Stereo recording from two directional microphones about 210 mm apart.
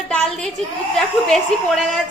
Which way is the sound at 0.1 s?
5° left (ahead or behind).